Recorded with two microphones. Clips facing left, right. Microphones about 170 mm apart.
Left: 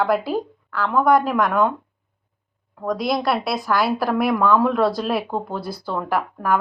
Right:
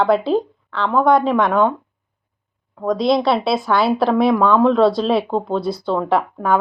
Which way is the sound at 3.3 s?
25° right (ahead or behind).